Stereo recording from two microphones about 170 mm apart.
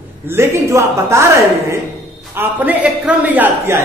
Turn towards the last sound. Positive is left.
turn(degrees=-10)  # may be behind; listen again after turning